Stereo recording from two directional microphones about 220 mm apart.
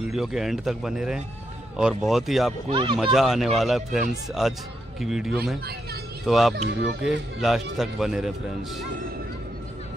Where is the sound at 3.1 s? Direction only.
Centre (ahead or behind).